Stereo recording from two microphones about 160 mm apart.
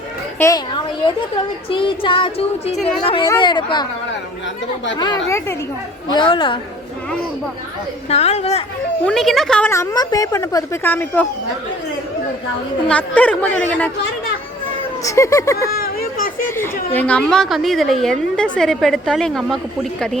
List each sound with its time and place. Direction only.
0.3 s a child's voice: 20° left (ahead or behind)
1.7 s music: 30° left (ahead or behind)
3.2 s speech: 30° left (ahead or behind)
4.9 s speech: 25° left (ahead or behind)
6.1 s music: 30° left (ahead or behind)
8.1 s music: 40° left (ahead or behind)
9.0 s a woman's voice: centre (ahead or behind)
9.7 s a woman's voice: 20° left (ahead or behind)
12.9 s a woman's voice: 10° left (ahead or behind)
15.0 s speech: 20° left (ahead or behind)
15.5 s a sound: 75° left (ahead or behind)
16.6 s a woman's voice: 10° left (ahead or behind)